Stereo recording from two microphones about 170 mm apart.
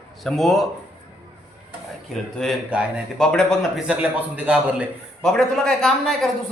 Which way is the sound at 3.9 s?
10° right (ahead or behind).